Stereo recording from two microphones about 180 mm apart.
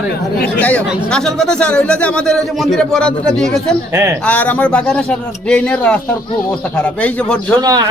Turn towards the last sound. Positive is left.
turn(degrees=-20)  # may be behind; listen again after turning